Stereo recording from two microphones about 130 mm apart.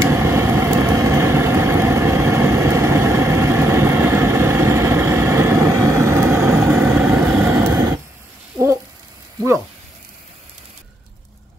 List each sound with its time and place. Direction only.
0.0 s vehicle: 20° right (ahead or behind)
6.7 s vehicle: 5° right (ahead or behind)